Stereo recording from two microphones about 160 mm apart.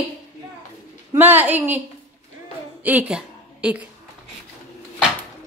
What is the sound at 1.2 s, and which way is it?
Speech, 10° right (ahead or behind).